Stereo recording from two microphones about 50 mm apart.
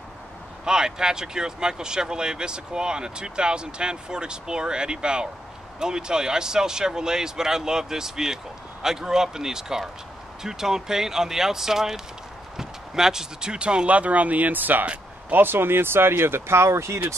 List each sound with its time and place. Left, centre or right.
0.7 s speech: centre; by 17.0 s right